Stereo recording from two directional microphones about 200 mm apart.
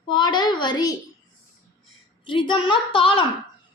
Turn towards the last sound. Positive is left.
turn(degrees=25)  # may be behind; listen again after turning